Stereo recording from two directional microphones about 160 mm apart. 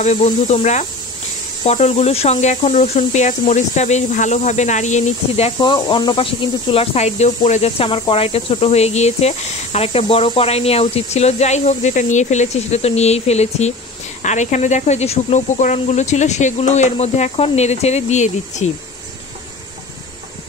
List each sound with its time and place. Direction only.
0.0 s speech: 45° left (ahead or behind)
5.6 s speech: 25° left (ahead or behind); by 18.7 s 45° left (ahead or behind)